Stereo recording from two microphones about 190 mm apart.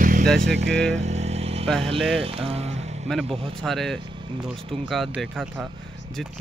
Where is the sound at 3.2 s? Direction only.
30° right (ahead or behind).